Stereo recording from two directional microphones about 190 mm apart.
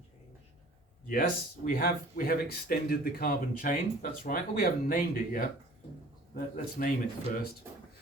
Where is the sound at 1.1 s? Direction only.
45° left (ahead or behind).